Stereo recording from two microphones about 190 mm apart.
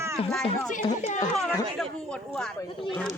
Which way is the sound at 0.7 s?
40° left (ahead or behind).